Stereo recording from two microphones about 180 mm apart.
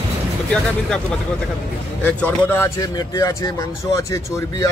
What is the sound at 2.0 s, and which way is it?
Speech, 10° left (ahead or behind).